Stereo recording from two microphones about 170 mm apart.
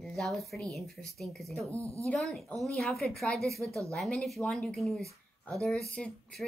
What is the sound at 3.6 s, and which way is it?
Speech, 20° right (ahead or behind).